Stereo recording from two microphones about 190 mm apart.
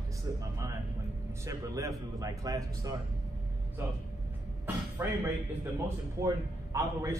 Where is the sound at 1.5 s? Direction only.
15° right (ahead or behind).